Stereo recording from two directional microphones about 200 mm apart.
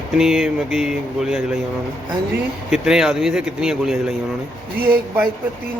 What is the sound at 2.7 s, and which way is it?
Speech, 5° right (ahead or behind).